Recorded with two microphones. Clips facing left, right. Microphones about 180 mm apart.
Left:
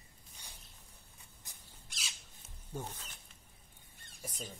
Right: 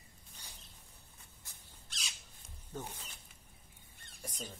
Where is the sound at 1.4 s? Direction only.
15° left (ahead or behind).